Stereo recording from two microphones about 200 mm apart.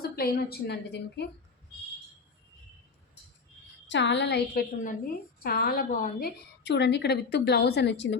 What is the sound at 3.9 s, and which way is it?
A woman's voice, 60° left (ahead or behind).